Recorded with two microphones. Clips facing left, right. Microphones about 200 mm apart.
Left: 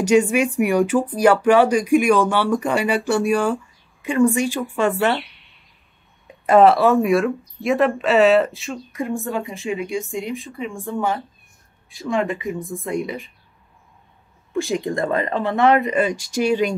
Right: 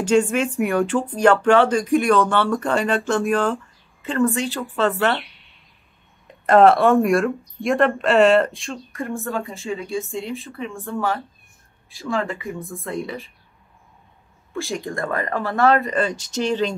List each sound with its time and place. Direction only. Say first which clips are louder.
0.1 s speech: left 2 dB; 15° left (ahead or behind)
6.2 s speech: even; 5° left (ahead or behind)
8.9 s speech: left 2 dB; 15° left (ahead or behind)
14.7 s speech: left 4 dB; 20° left (ahead or behind)